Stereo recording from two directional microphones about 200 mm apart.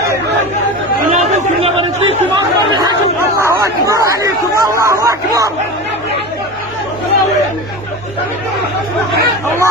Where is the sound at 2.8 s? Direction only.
15° right (ahead or behind).